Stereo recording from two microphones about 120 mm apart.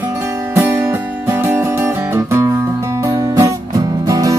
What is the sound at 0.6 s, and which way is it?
Music, 20° right (ahead or behind).